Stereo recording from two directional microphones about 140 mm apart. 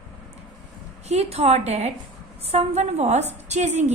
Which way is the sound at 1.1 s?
50° right (ahead or behind).